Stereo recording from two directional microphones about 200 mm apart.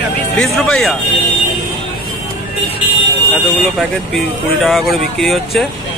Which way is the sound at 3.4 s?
Centre (ahead or behind).